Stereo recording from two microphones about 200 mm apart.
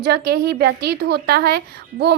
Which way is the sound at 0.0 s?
55° right (ahead or behind).